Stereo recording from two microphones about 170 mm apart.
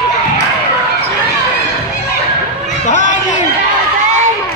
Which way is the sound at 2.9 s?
45° left (ahead or behind).